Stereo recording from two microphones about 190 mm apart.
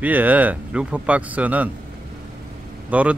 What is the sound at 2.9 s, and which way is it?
Speech, 5° right (ahead or behind).